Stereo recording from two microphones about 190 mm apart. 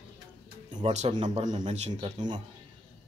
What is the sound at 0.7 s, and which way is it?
Music, 25° right (ahead or behind).